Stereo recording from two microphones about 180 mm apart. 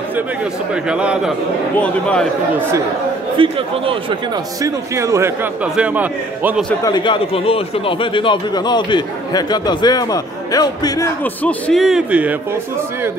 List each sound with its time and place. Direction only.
0.8 s a man's voice: 5° right (ahead or behind)
1.8 s a man's voice: 5° left (ahead or behind)
3.3 s speech: 30° right (ahead or behind)
4.6 s a man's voice: 15° right (ahead or behind)
6.8 s a man's voice: 25° left (ahead or behind)
11.2 s a man's voice: 5° left (ahead or behind)